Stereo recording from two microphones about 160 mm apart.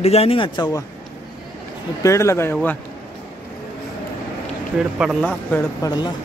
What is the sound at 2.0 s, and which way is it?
Speech, 20° left (ahead or behind).